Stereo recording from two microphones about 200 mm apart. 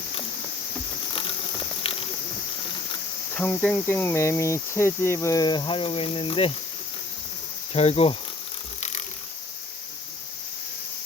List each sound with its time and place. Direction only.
1.8 s a sound: 25° left (ahead or behind)
3.3 s cricket: 5° left (ahead or behind); by 6.5 s 25° left (ahead or behind)
7.7 s cricket: 30° left (ahead or behind)
8.8 s ratchet: 35° left (ahead or behind)